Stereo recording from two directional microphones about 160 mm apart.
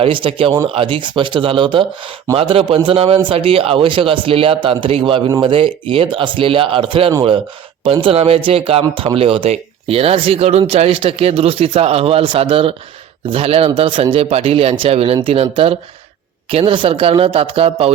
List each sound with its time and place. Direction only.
0.0 s speech: 35° right (ahead or behind)
7.9 s speech: 35° right (ahead or behind)